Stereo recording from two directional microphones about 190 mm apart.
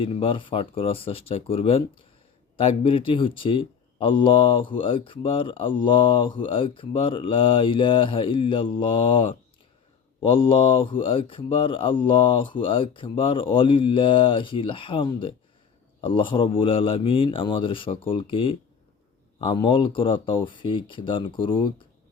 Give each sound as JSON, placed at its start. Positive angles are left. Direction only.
{"t": 0.0, "sound": "speech", "side_deg": 30}